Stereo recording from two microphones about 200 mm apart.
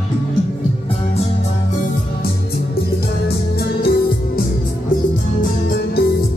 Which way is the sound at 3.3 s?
50° left (ahead or behind).